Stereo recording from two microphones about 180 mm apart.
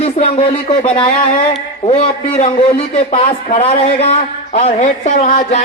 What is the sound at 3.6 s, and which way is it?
A man's voice, 35° left (ahead or behind).